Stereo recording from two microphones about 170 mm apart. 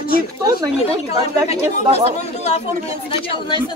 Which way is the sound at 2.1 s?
40° left (ahead or behind).